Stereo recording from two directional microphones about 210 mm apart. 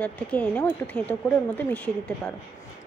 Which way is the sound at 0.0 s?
5° left (ahead or behind).